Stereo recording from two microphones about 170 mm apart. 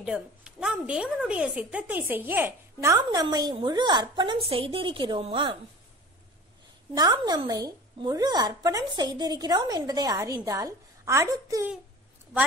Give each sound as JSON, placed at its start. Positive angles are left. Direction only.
{"t": 0.0, "sound": "a woman's voice", "side_deg": -5}
{"t": 6.9, "sound": "a woman's voice", "side_deg": -25}